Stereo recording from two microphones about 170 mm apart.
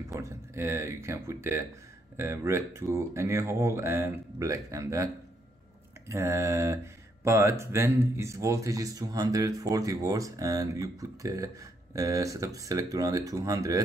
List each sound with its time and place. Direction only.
0.1 s speech: 15° right (ahead or behind)